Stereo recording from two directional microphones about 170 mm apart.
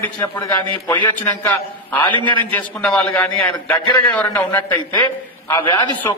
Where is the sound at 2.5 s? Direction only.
5° left (ahead or behind).